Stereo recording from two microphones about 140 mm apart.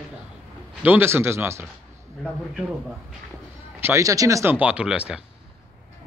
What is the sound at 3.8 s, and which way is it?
Speech, 20° right (ahead or behind).